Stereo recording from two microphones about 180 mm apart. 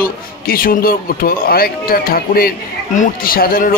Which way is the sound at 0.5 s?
55° left (ahead or behind).